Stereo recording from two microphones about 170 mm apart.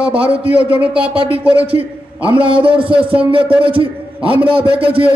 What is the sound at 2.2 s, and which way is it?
Speech, 30° right (ahead or behind).